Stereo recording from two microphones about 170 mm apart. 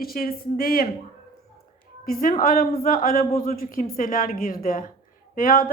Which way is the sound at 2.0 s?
55° left (ahead or behind).